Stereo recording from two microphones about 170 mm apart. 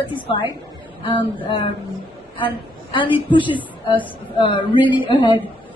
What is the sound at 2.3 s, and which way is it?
A woman's voice, 30° left (ahead or behind).